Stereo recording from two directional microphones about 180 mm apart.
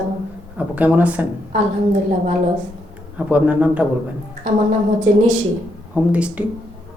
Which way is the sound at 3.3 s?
10° right (ahead or behind).